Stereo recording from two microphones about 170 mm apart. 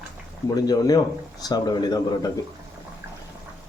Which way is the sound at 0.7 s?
20° left (ahead or behind).